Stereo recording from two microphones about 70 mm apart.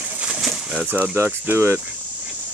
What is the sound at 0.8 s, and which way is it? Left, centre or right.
Speech, right.